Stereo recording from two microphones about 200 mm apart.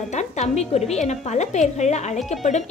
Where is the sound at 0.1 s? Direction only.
35° left (ahead or behind).